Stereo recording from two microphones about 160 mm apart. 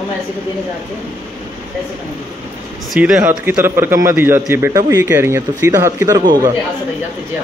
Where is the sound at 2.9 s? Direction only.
5° right (ahead or behind).